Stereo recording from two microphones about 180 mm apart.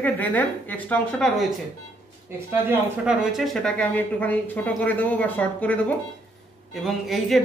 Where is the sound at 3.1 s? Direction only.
Centre (ahead or behind).